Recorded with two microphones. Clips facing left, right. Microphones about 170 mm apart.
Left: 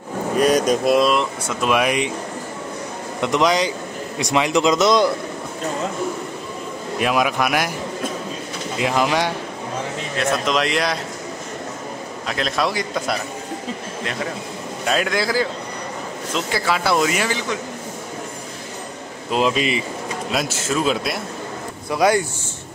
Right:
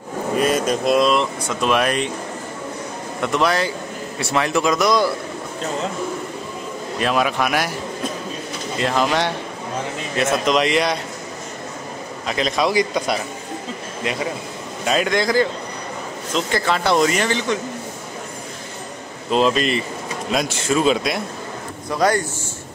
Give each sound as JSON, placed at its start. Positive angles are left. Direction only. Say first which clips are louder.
{"t": 0.4, "sound": "speech", "louder": "left 3 dB", "side_deg": 0}
{"t": 3.2, "sound": "a man's voice", "louder": "left 1 dB", "side_deg": 15}
{"t": 7.0, "sound": "a man's voice", "louder": "even", "side_deg": 10}
{"t": 8.7, "sound": "a man's voice", "louder": "even", "side_deg": 10}
{"t": 10.1, "sound": "speech", "louder": "right 2 dB", "side_deg": 0}
{"t": 12.3, "sound": "speech", "louder": "right 2 dB", "side_deg": 0}
{"t": 14.9, "sound": "speech", "louder": "right 2 dB", "side_deg": 0}
{"t": 19.3, "sound": "a man's voice", "louder": "right 2 dB", "side_deg": 10}